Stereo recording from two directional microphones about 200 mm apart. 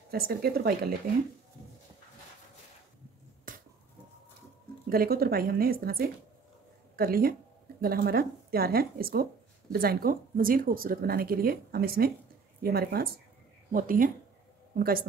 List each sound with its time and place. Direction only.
0.1 s speech: 50° right (ahead or behind)
3.5 s finger snapping: 45° right (ahead or behind)
4.8 s a woman's voice: 50° right (ahead or behind)